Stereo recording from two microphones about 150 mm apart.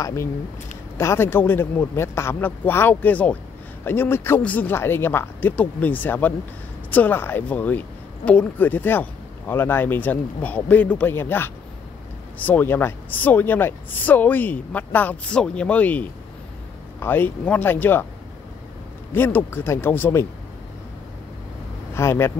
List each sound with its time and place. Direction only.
0.0 s speech: 15° left (ahead or behind)
19.1 s speech: 15° left (ahead or behind)
21.9 s speech: 15° left (ahead or behind)